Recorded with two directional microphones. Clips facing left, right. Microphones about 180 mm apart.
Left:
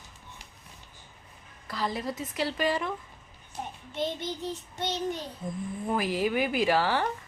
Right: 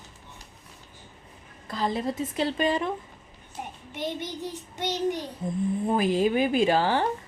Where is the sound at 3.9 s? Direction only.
15° right (ahead or behind).